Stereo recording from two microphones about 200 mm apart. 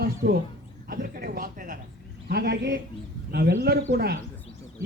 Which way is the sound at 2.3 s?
55° right (ahead or behind).